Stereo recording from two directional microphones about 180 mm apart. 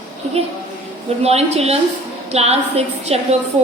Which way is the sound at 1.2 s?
35° right (ahead or behind).